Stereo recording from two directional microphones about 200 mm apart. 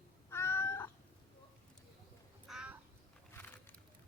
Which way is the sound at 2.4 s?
5° right (ahead or behind).